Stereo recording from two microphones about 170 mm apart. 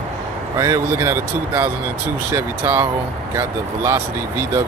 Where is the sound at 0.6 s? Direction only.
15° right (ahead or behind).